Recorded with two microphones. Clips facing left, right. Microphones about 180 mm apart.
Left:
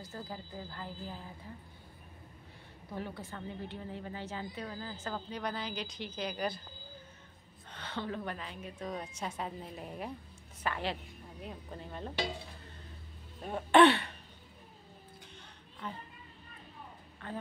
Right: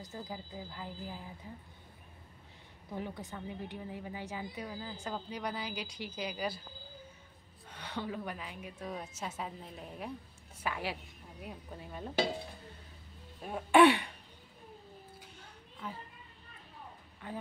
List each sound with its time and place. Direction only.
0.0 s a woman's voice: 15° right (ahead or behind)
2.9 s a woman's voice: 15° right (ahead or behind)
7.7 s a woman's voice: 10° right (ahead or behind)
13.4 s a woman's voice: 5° right (ahead or behind)
15.8 s a child's voice: 5° right (ahead or behind)
17.2 s a woman's voice: 10° right (ahead or behind)